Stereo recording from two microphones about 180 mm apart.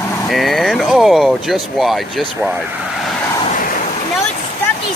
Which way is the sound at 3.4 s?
45° left (ahead or behind).